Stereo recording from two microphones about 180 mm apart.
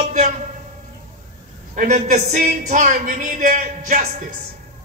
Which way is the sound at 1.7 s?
45° right (ahead or behind).